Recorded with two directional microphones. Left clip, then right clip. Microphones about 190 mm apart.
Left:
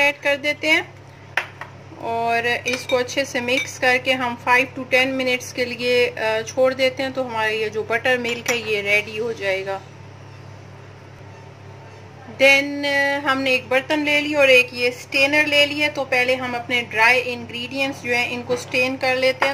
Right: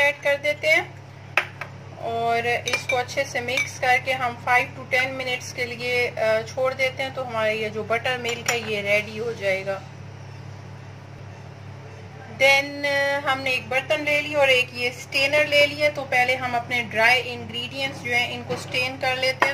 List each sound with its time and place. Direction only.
0.0 s a woman's voice: 55° left (ahead or behind)
2.2 s a woman's voice: 55° left (ahead or behind)
12.5 s a woman's voice: 50° left (ahead or behind)